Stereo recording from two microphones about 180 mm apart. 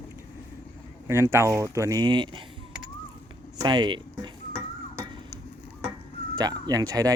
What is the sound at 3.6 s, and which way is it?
Speech, 25° right (ahead or behind).